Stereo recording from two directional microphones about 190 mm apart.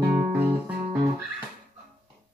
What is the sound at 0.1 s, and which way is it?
Music, 10° right (ahead or behind).